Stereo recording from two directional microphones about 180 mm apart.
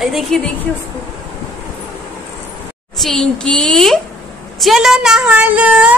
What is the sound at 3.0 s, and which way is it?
A woman's voice, 5° left (ahead or behind).